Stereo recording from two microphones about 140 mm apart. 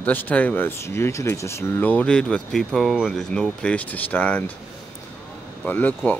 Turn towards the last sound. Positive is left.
turn(degrees=10)  # may be behind; listen again after turning